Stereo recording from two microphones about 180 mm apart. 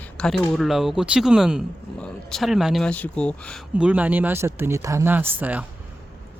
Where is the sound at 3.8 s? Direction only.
10° right (ahead or behind).